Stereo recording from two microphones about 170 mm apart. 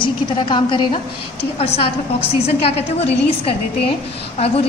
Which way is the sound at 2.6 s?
35° left (ahead or behind).